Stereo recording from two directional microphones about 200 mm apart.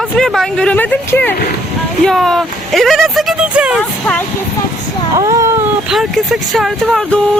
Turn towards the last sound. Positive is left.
turn(degrees=0)  # may be behind; listen again after turning